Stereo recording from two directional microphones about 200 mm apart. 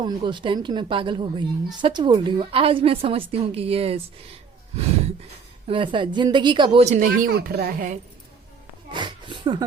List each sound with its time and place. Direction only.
0.0 s a woman's voice: 25° right (ahead or behind)
5.6 s a woman's voice: 25° right (ahead or behind)
6.8 s speech: 40° right (ahead or behind)
8.9 s speech: 25° right (ahead or behind)